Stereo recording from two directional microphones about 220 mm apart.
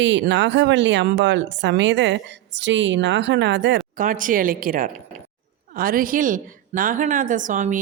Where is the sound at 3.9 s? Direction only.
35° right (ahead or behind).